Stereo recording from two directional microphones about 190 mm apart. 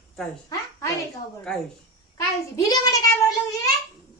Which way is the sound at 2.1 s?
20° left (ahead or behind).